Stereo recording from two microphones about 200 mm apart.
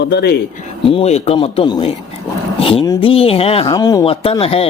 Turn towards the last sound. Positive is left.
turn(degrees=30)  # may be behind; listen again after turning